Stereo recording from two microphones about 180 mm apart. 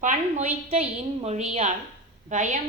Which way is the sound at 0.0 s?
40° right (ahead or behind).